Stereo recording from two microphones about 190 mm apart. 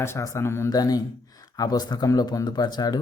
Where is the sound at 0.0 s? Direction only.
15° left (ahead or behind).